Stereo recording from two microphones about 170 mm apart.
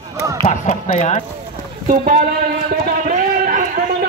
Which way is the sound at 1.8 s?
55° right (ahead or behind).